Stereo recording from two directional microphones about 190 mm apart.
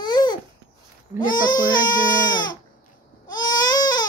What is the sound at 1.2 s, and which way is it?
Speech, 45° left (ahead or behind).